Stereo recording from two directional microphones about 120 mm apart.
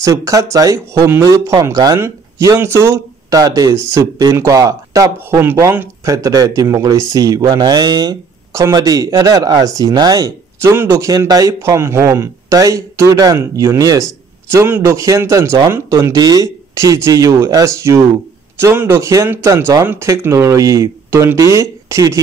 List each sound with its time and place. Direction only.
0.0 s speech: 25° right (ahead or behind)
10.6 s speech: 20° right (ahead or behind)
10.9 s speech: 30° right (ahead or behind)